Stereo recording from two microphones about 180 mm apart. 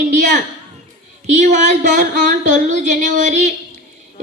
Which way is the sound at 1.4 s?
40° right (ahead or behind).